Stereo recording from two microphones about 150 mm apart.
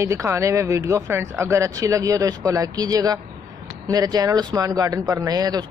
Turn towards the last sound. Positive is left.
turn(degrees=-25)  # may be behind; listen again after turning